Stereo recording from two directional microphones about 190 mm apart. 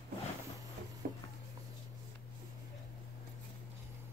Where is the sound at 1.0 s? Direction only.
45° right (ahead or behind).